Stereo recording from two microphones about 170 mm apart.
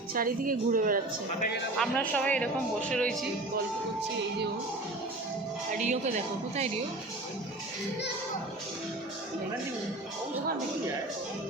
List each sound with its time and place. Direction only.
0.1 s a woman's voice: 55° right (ahead or behind)
1.8 s speech: 10° left (ahead or behind)
5.7 s speech: 45° right (ahead or behind)